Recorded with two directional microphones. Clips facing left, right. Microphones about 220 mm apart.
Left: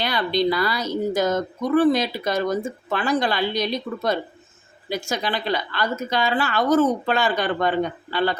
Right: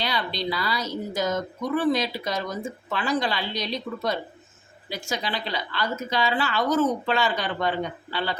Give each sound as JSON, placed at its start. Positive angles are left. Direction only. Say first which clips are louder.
{"t": 0.0, "sound": "a woman's voice", "louder": "left 7 dB", "side_deg": 55}